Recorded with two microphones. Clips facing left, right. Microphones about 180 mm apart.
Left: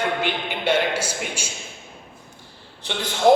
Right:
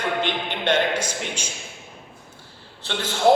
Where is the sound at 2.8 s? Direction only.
15° left (ahead or behind).